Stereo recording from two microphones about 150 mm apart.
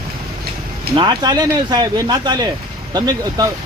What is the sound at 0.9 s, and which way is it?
Speech, 30° right (ahead or behind).